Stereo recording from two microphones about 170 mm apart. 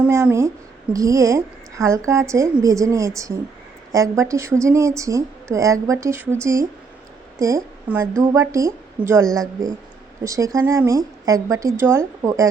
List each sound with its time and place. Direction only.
0.1 s a woman's voice: 15° right (ahead or behind)